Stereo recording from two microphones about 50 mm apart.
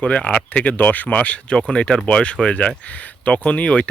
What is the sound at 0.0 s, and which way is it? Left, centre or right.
Speech, left.